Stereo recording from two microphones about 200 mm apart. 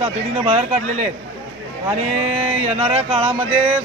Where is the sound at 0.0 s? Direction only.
30° right (ahead or behind).